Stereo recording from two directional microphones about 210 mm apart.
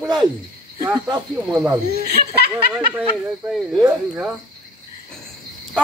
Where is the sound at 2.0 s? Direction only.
50° right (ahead or behind).